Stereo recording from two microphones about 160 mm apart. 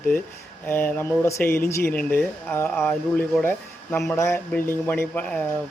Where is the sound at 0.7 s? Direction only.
15° left (ahead or behind).